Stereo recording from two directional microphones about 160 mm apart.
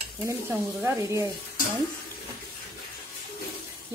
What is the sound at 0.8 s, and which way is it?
Speech, 15° right (ahead or behind).